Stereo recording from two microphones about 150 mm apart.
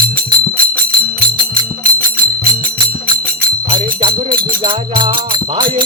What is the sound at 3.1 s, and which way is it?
Music, 30° right (ahead or behind).